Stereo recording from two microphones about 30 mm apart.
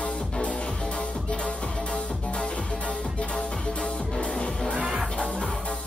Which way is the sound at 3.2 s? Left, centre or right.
Left.